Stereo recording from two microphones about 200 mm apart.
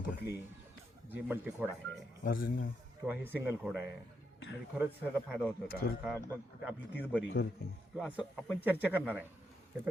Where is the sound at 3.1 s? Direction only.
10° right (ahead or behind).